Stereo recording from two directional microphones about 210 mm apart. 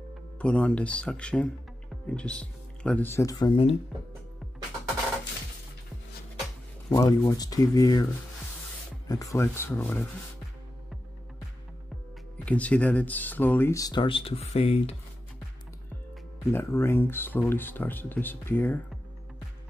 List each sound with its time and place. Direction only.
0.4 s speech: 5° left (ahead or behind); by 3.7 s 25° left (ahead or behind)
6.9 s speech: 15° left (ahead or behind)
12.4 s speech: 5° left (ahead or behind); by 15.0 s 30° left (ahead or behind)
16.5 s speech: 10° left (ahead or behind)